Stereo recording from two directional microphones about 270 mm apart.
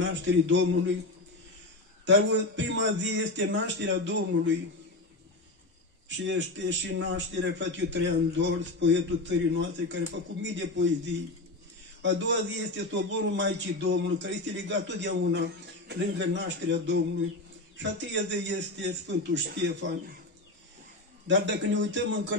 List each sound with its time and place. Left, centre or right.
0.0 s a man's voice: right
2.0 s a man's voice: right
6.0 s a man's voice: right
12.0 s a man's voice: right
21.3 s a man's voice: right